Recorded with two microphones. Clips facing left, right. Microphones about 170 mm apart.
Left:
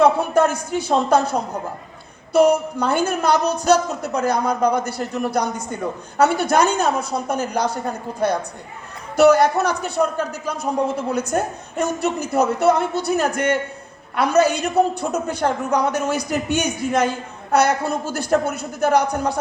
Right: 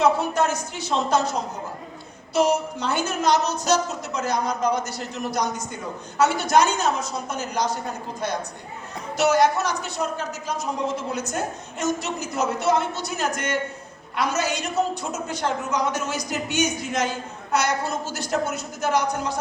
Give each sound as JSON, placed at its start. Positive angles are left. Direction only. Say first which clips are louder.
{"t": 0.0, "sound": "a woman's voice", "louder": "left 5 dB", "side_deg": 55}